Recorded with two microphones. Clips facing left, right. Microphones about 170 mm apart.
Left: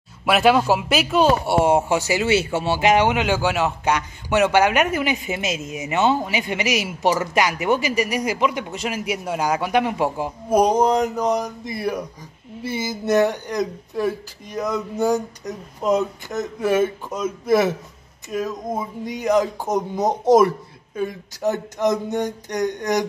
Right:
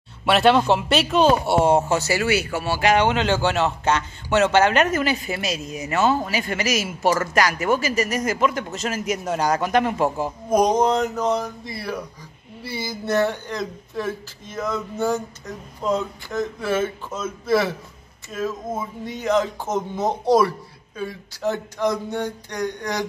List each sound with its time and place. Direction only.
0.2 s a man's voice: 5° left (ahead or behind)
2.2 s a man's voice: 25° left (ahead or behind)